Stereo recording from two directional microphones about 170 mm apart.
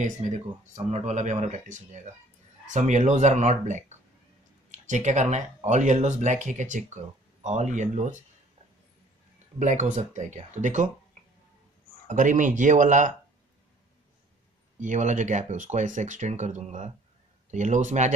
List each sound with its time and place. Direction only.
0.0 s speech: 45° right (ahead or behind)
9.6 s speech: 45° right (ahead or behind)
12.1 s speech: 50° right (ahead or behind)
14.8 s speech: 45° right (ahead or behind)